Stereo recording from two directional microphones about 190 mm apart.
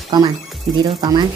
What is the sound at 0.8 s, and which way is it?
Speech, 20° right (ahead or behind).